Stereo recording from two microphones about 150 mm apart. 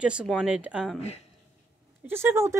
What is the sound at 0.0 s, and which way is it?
Speech, 5° right (ahead or behind).